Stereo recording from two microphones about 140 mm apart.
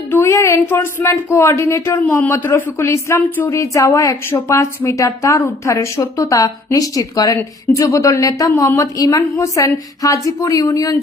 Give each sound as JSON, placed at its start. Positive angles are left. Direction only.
{"t": 0.1, "sound": "speech", "side_deg": 20}